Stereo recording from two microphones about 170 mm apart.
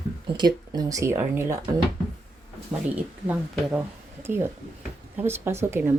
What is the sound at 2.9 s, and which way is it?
Speech, 10° right (ahead or behind).